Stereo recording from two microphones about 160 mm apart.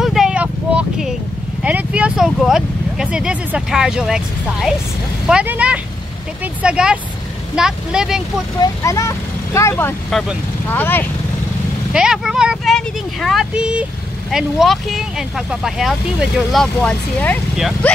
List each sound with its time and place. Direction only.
0.0 s vehicle: centre (ahead or behind)
1.6 s a sound: 10° right (ahead or behind)
5.3 s speech: 10° right (ahead or behind)
8.5 s speech: 20° left (ahead or behind)
11.9 s speech: 5° right (ahead or behind)
16.8 s speech: 10° left (ahead or behind)